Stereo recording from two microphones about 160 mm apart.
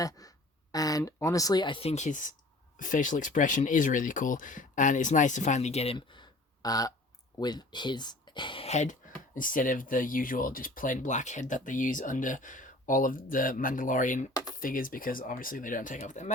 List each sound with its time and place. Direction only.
0.7 s speech: 25° left (ahead or behind)
6.6 s a sound: 25° left (ahead or behind)
7.3 s speech: 25° left (ahead or behind); by 9.0 s 45° left (ahead or behind)
9.3 s speech: 60° left (ahead or behind)